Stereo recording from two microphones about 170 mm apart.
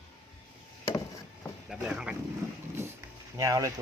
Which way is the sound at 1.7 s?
5° right (ahead or behind).